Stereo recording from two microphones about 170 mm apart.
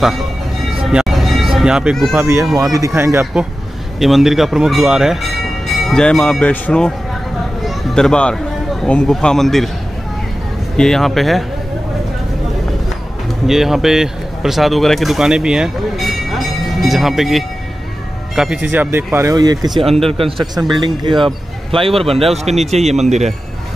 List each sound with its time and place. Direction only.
0.8 s a sound: centre (ahead or behind)
2.1 s speech: 15° right (ahead or behind)
4.0 s a man's voice: centre (ahead or behind)
10.8 s a man's voice: centre (ahead or behind)
13.5 s speech: centre (ahead or behind); by 23.3 s 40° right (ahead or behind)